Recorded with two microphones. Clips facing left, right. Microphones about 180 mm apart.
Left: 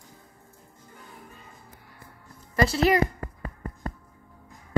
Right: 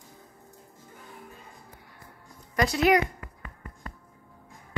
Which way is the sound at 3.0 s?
40° left (ahead or behind).